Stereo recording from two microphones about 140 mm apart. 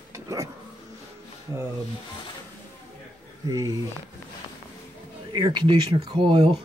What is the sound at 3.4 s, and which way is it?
Speech, 25° right (ahead or behind).